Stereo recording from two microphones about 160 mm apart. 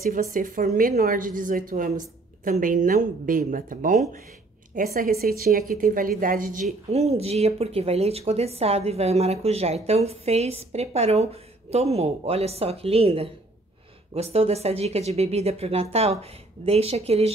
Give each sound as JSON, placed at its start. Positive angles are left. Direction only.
{"t": 0.0, "sound": "a woman's voice", "side_deg": -60}
{"t": 6.9, "sound": "speech", "side_deg": -40}